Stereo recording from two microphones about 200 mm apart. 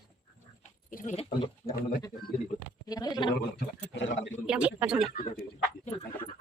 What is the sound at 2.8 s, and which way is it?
Speech, 20° left (ahead or behind).